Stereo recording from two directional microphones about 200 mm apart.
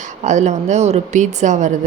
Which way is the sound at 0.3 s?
35° right (ahead or behind).